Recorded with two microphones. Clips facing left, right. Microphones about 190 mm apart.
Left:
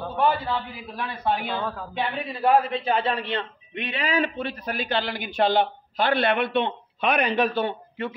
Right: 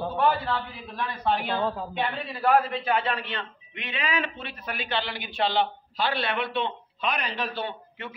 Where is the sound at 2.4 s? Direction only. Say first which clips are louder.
Left 2 dB; 20° left (ahead or behind); by 7.7 s 50° left (ahead or behind).